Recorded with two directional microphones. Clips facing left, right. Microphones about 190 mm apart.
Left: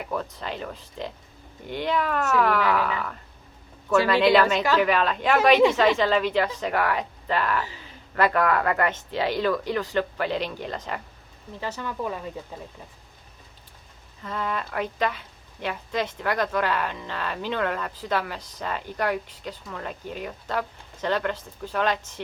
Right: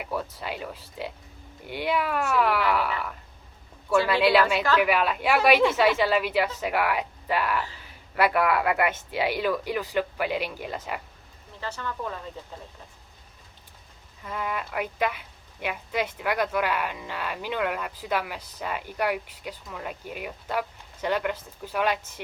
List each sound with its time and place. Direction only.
0.0 s speech: 5° right (ahead or behind)
11.6 s speech: 15° left (ahead or behind)
14.3 s speech: 10° right (ahead or behind)